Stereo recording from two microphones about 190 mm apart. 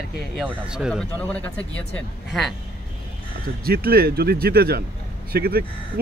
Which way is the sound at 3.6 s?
55° right (ahead or behind).